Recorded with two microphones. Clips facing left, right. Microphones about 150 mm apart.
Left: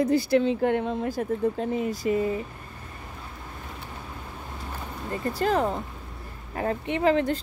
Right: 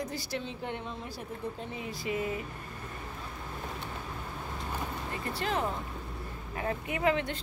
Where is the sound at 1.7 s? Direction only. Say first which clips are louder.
Left 10 dB; 45° left (ahead or behind).